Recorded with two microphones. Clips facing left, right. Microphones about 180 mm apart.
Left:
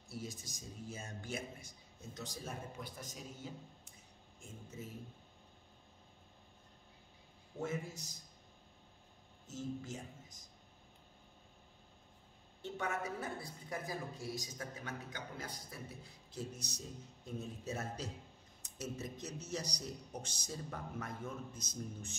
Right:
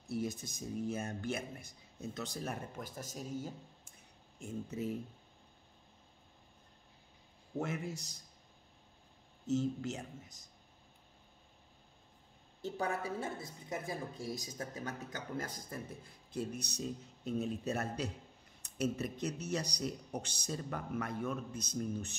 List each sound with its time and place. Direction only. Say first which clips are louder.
0.1 s speech: right 9 dB; 60° right (ahead or behind)
4.4 s speech: right 10 dB; 65° right (ahead or behind)
7.5 s speech: right 3 dB; 70° right (ahead or behind)
9.5 s speech: right 9 dB; 70° right (ahead or behind)
12.6 s a woman's voice: right 3 dB; 35° right (ahead or behind)
14.3 s a man's voice: right 3 dB; 35° right (ahead or behind); by 22.1 s 65° right (ahead or behind)